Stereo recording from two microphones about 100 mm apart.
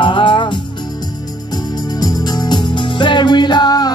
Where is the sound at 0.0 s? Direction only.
55° left (ahead or behind).